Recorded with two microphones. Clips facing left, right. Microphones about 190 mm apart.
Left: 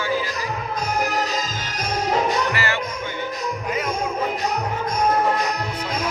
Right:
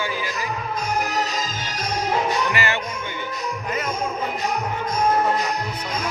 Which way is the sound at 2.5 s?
20° right (ahead or behind).